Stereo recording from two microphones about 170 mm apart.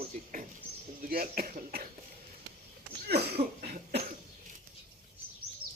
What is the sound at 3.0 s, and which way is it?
Cough, 70° right (ahead or behind).